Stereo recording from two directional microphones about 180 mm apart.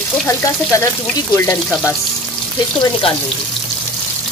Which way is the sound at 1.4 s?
15° left (ahead or behind).